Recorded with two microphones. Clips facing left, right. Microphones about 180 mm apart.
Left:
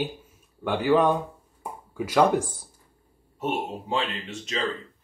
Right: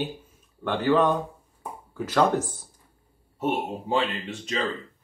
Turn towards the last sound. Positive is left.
turn(degrees=-35)  # may be behind; listen again after turning